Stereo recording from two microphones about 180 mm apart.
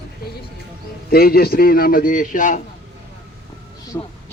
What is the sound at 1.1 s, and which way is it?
A man's voice, 55° left (ahead or behind).